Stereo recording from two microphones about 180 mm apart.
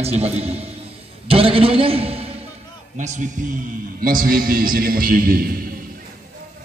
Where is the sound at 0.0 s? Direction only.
35° right (ahead or behind).